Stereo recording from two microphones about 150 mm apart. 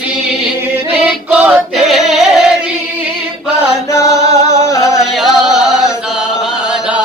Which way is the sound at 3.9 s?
20° left (ahead or behind).